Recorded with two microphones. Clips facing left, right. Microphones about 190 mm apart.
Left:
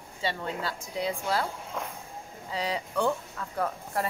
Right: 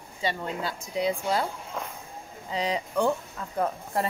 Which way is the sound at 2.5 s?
20° right (ahead or behind).